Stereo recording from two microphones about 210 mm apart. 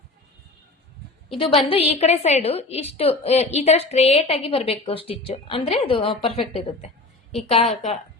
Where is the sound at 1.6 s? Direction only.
25° left (ahead or behind).